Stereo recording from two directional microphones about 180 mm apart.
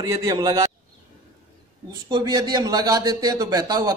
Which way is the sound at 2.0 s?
25° right (ahead or behind).